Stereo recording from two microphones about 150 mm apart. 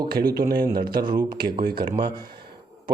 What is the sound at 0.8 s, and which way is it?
A man's voice, 30° right (ahead or behind).